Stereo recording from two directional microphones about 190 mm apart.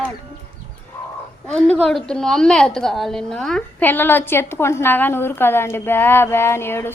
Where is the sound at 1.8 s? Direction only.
5° left (ahead or behind).